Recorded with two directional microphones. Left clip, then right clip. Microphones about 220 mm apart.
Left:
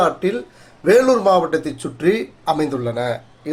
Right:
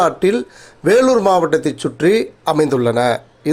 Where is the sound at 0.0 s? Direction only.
45° right (ahead or behind).